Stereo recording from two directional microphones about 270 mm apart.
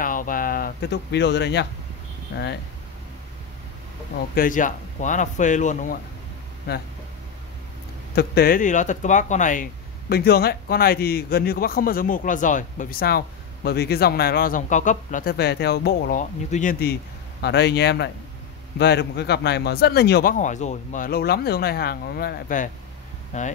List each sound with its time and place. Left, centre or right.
0.0 s speech: left
4.4 s speech: left
8.2 s speech: left
17.4 s speech: left